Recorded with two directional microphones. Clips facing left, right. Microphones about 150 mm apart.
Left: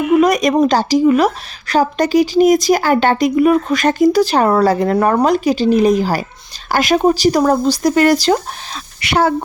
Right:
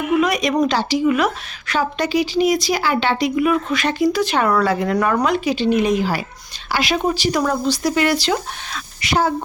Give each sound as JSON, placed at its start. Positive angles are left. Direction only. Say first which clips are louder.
{"t": 0.2, "sound": "a woman's voice", "louder": "left 5 dB", "side_deg": 45}
{"t": 9.0, "sound": "speech", "louder": "left 4 dB", "side_deg": 65}